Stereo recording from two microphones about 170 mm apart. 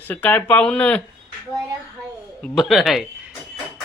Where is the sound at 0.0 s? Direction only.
10° left (ahead or behind).